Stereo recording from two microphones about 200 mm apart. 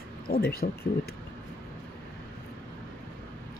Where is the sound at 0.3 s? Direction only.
50° left (ahead or behind).